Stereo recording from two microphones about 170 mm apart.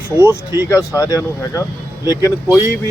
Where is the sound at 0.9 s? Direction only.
20° left (ahead or behind).